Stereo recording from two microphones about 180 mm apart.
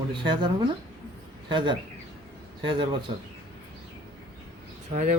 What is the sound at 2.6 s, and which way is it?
Speech, 25° right (ahead or behind).